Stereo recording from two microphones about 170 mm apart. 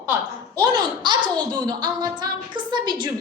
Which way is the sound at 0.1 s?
20° right (ahead or behind).